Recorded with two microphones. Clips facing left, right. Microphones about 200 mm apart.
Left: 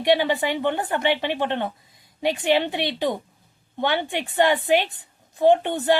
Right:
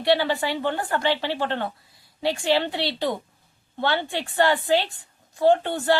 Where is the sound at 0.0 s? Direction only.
15° left (ahead or behind).